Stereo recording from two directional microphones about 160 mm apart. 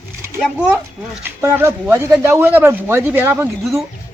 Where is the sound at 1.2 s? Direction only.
15° right (ahead or behind).